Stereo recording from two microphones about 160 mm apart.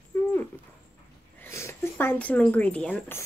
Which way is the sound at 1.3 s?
15° left (ahead or behind).